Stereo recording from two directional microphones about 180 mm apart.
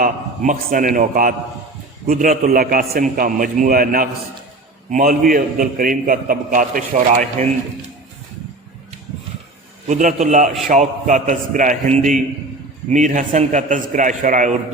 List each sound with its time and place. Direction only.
0.0 s a man's voice: 50° right (ahead or behind)
9.8 s a man's voice: 45° right (ahead or behind)